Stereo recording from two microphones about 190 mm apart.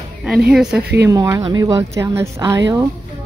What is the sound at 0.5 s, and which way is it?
Speech, 5° right (ahead or behind).